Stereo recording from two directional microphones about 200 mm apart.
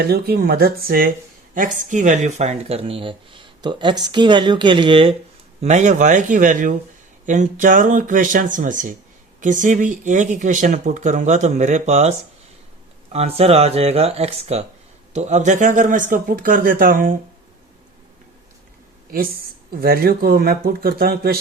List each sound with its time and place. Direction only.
0.0 s speech: 50° right (ahead or behind); by 12.1 s 35° right (ahead or behind)
13.1 s speech: 30° right (ahead or behind)
19.1 s speech: 50° right (ahead or behind)